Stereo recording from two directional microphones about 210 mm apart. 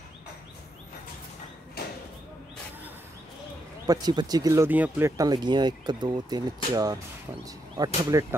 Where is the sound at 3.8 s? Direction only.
20° right (ahead or behind).